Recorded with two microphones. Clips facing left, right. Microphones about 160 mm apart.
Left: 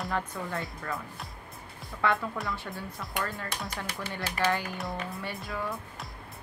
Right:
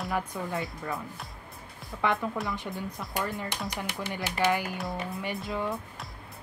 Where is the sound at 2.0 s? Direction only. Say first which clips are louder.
Right 1 dB; 20° right (ahead or behind).